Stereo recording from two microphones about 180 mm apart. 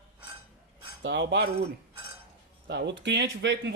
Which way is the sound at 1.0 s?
90° right.